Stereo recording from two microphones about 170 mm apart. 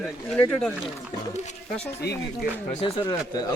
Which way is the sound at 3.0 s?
25° left (ahead or behind).